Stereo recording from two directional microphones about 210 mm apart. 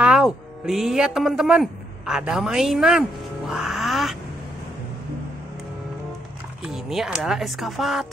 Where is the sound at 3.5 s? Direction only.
Centre (ahead or behind).